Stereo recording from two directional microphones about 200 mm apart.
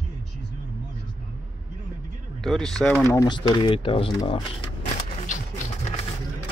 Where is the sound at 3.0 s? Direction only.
20° left (ahead or behind).